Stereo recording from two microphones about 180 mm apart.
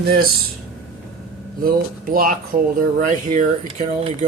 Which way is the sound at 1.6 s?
55° right (ahead or behind).